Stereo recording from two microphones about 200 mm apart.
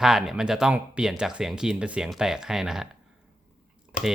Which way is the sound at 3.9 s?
40° left (ahead or behind).